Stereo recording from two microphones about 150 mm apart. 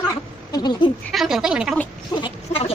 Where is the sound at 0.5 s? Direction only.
30° left (ahead or behind).